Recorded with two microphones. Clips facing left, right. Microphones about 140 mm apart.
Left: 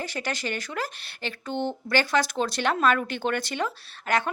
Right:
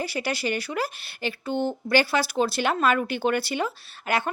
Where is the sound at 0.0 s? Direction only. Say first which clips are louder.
Right 3 dB; 10° right (ahead or behind).